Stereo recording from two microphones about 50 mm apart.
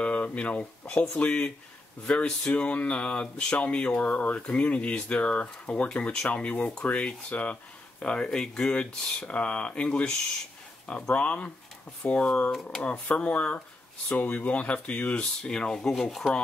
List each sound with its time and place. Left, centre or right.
0.0 s speech: left; by 16.3 s centre